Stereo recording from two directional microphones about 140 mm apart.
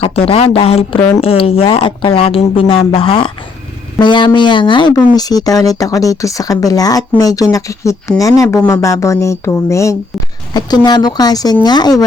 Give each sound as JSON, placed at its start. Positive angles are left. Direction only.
{"t": 0.0, "sound": "speech", "side_deg": 45}